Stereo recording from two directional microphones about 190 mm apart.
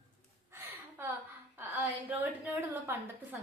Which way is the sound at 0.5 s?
15° right (ahead or behind).